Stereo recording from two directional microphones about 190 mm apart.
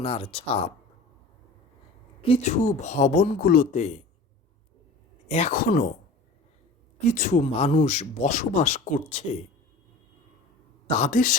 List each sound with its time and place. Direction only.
0.0 s speech: 30° left (ahead or behind)
2.2 s speech: 35° left (ahead or behind)
5.3 s speech: 40° left (ahead or behind)
7.0 s speech: 40° left (ahead or behind)
10.8 s speech: 40° left (ahead or behind)